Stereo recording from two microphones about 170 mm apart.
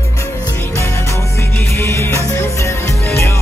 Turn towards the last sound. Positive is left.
turn(degrees=15)  # may be behind; listen again after turning